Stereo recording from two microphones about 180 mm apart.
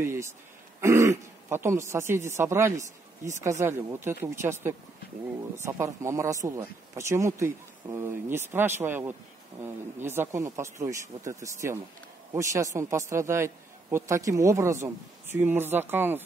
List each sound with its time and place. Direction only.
0.0 s speech: 15° right (ahead or behind)